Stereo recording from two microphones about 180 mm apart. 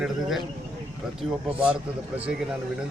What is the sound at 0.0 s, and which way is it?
Speech, centre (ahead or behind).